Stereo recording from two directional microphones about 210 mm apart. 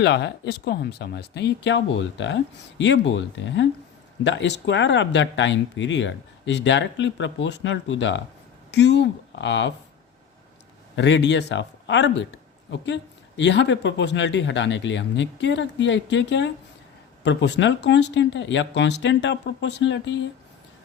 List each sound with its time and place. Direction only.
0.0 s speech: 55° left (ahead or behind)
10.9 s speech: 60° left (ahead or behind)